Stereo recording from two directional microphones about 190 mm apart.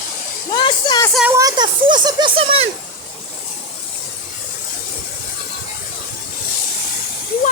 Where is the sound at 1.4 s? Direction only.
20° right (ahead or behind).